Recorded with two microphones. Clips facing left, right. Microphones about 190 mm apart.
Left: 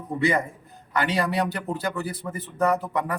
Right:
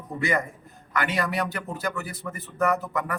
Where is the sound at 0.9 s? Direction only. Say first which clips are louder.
Left 2 dB; 30° left (ahead or behind).